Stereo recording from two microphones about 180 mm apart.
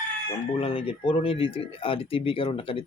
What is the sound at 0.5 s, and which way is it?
Speech, 30° left (ahead or behind).